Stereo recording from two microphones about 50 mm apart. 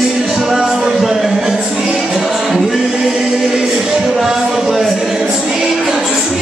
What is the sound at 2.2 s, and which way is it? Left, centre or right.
Choir, centre.